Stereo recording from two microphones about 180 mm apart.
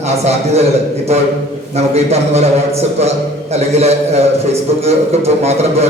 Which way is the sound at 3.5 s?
35° right (ahead or behind).